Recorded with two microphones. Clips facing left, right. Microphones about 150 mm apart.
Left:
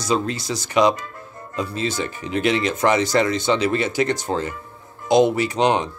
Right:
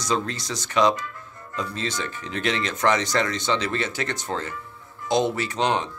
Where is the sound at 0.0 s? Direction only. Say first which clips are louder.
Left 4 dB; 10° left (ahead or behind).